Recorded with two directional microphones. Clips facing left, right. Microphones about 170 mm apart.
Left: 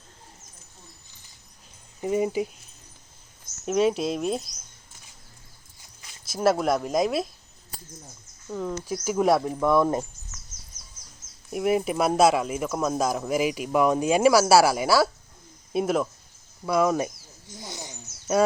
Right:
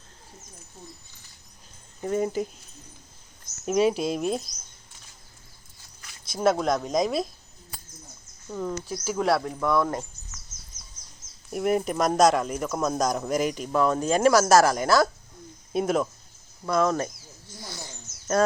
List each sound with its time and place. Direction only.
2.0 s speech: 10° left (ahead or behind)
3.7 s speech: centre (ahead or behind)
6.2 s speech: 5° left (ahead or behind)
8.4 s speech: centre (ahead or behind)
8.9 s speech: 15° left (ahead or behind)
11.5 s speech: 5° left (ahead or behind)
17.5 s a sound: 20° left (ahead or behind)